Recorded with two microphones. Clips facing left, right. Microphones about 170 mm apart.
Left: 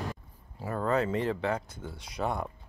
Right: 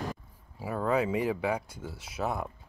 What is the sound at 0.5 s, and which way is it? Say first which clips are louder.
Speech: even; 5° right (ahead or behind).